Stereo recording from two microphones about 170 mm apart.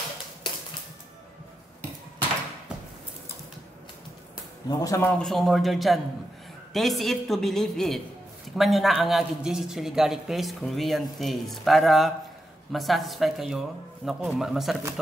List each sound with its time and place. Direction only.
4.6 s speech: 20° left (ahead or behind)
5.2 s speech: centre (ahead or behind)